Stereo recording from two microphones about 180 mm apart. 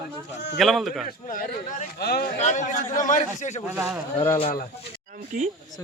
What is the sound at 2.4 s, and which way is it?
A man's voice, 40° left (ahead or behind).